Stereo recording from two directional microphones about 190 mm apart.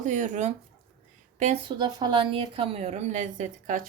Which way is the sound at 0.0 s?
40° right (ahead or behind).